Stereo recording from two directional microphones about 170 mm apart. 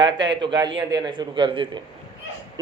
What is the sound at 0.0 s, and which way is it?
Speech, 25° right (ahead or behind).